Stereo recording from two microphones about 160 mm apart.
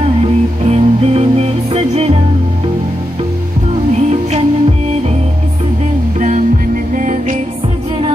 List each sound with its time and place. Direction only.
0.0 s music: 40° right (ahead or behind)
3.9 s music: 40° right (ahead or behind)
6.1 s music: 50° right (ahead or behind)